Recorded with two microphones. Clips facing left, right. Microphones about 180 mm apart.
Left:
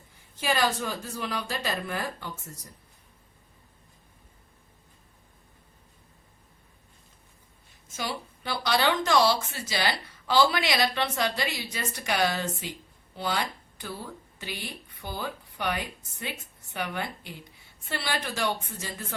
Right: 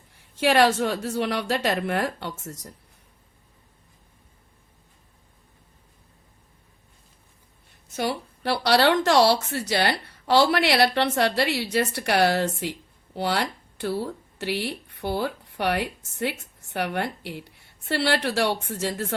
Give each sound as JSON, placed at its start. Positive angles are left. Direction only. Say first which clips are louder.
{"t": 0.1, "sound": "speech", "louder": "right 8 dB", "side_deg": -75}
{"t": 7.9, "sound": "speech", "louder": "right 7 dB", "side_deg": -65}